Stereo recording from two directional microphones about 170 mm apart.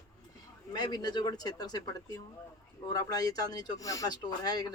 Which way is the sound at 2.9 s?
20° left (ahead or behind).